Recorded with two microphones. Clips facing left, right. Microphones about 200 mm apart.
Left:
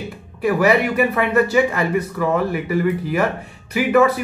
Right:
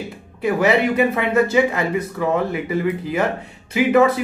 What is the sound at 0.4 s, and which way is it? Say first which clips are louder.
Speech: left 1 dB; 20° right (ahead or behind).